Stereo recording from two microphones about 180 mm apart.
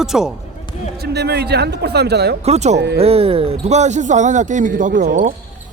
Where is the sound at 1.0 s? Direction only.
65° right (ahead or behind).